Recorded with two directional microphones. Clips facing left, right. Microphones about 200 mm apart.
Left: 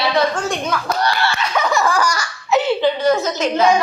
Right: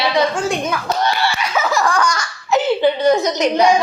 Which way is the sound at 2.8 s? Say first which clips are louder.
Right 2 dB; 15° right (ahead or behind).